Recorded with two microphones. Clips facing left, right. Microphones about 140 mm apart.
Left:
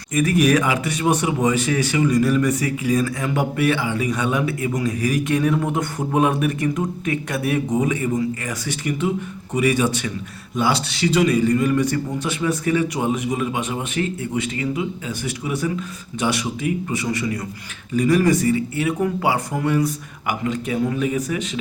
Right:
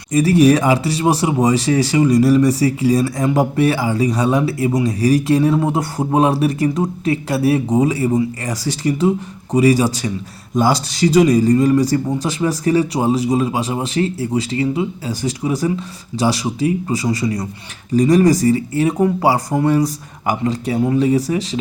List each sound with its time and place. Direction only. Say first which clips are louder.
0.1 s speech: right 5 dB; 30° right (ahead or behind)